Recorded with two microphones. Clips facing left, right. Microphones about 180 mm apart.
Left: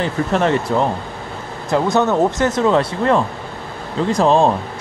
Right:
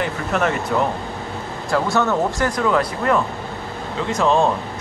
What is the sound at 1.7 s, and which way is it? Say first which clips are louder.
Speech: left 3 dB; 20° left (ahead or behind).